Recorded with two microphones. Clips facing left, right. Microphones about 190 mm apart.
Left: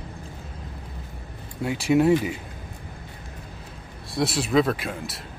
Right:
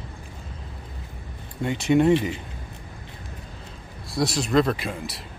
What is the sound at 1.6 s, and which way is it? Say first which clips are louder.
Speech: even; 5° left (ahead or behind).